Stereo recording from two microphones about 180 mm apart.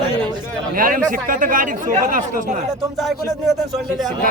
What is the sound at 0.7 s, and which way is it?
Speech, 50° right (ahead or behind).